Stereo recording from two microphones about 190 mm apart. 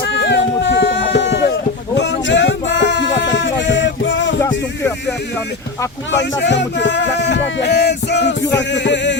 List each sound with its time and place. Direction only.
0.1 s a sound: 70° left (ahead or behind)
2.0 s music: 65° left (ahead or behind)
4.4 s speech: 15° left (ahead or behind)
6.4 s music: 70° left (ahead or behind)